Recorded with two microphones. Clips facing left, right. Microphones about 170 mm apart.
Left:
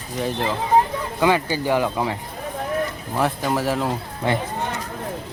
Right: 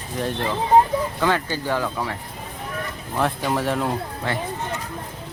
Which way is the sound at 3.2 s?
Centre (ahead or behind).